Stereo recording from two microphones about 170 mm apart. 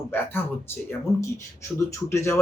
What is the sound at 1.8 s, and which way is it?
Speech, 15° left (ahead or behind).